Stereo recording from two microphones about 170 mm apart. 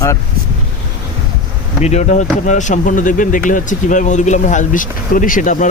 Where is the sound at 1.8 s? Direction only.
40° left (ahead or behind).